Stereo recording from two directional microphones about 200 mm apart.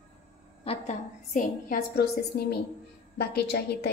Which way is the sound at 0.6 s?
35° left (ahead or behind).